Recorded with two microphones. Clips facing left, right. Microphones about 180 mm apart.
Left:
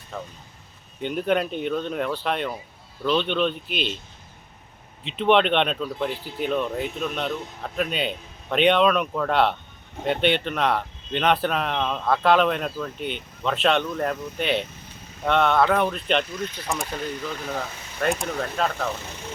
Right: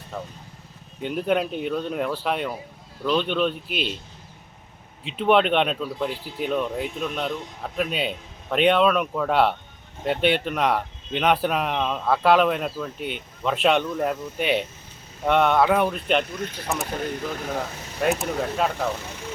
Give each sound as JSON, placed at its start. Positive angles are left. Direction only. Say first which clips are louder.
{"t": 0.1, "sound": "speech", "louder": "right 1 dB", "side_deg": -5}
{"t": 5.0, "sound": "speech", "louder": "even", "side_deg": -5}
{"t": 16.2, "sound": "speech", "louder": "even", "side_deg": -50}
{"t": 18.0, "sound": "speech", "louder": "right 2 dB", "side_deg": -5}